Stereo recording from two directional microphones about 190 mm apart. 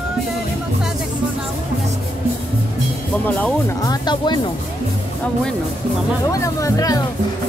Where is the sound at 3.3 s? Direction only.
10° left (ahead or behind).